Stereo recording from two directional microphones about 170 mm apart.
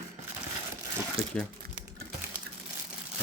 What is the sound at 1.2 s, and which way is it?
Speech, 35° right (ahead or behind).